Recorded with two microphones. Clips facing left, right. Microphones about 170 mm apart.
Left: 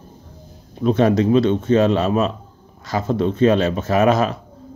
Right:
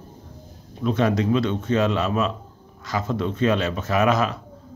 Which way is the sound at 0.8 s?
30° left (ahead or behind).